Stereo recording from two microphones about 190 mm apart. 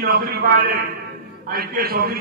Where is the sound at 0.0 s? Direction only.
55° right (ahead or behind).